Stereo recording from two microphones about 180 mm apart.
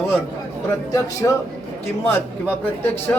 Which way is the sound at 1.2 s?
20° left (ahead or behind).